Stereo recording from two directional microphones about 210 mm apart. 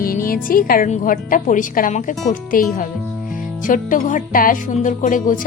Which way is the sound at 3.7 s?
40° left (ahead or behind).